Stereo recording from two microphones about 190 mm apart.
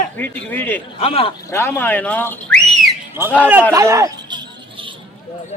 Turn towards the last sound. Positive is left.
turn(degrees=-15)  # may be behind; listen again after turning